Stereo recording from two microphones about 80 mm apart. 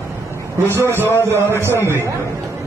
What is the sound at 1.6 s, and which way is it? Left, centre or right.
Speech, right.